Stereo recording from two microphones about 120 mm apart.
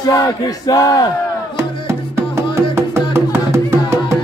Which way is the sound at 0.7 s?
30° left (ahead or behind).